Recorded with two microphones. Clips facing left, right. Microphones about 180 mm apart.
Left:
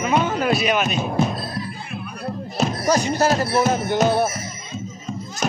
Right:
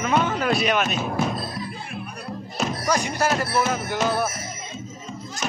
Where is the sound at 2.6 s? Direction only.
35° left (ahead or behind).